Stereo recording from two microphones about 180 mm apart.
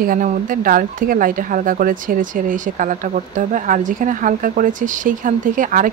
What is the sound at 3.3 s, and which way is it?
Speech, 45° right (ahead or behind).